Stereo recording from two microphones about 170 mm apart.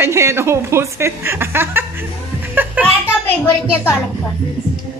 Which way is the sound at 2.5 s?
10° right (ahead or behind).